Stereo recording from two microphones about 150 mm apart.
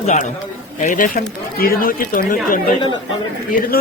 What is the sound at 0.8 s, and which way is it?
Speech, 65° left (ahead or behind).